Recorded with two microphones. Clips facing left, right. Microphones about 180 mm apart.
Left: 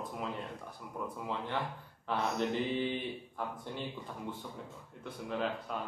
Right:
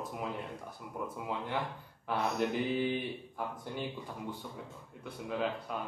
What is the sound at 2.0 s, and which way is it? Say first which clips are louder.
Speech: right 1 dB; 10° right (ahead or behind).